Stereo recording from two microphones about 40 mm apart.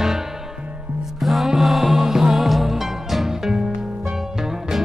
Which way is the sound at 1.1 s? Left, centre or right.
Centre.